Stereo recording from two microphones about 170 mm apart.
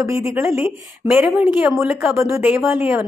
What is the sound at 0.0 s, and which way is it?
A woman's voice, 15° right (ahead or behind).